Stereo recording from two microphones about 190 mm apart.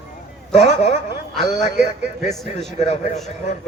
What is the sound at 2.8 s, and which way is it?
Speech, 40° left (ahead or behind).